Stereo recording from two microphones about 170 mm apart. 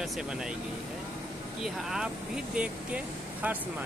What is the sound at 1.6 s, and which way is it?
Speech, 5° right (ahead or behind).